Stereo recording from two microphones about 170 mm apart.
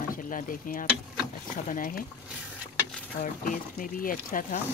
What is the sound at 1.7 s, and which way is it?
Speech, 55° left (ahead or behind).